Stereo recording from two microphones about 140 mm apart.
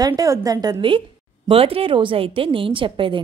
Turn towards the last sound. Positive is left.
turn(degrees=-35)  # may be behind; listen again after turning